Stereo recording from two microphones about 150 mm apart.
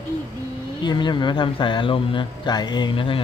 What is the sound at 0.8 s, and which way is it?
Speech, 30° left (ahead or behind).